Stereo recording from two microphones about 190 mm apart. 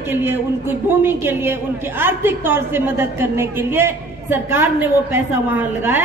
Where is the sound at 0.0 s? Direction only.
10° right (ahead or behind).